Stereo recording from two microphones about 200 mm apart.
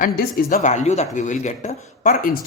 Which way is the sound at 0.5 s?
35° left (ahead or behind).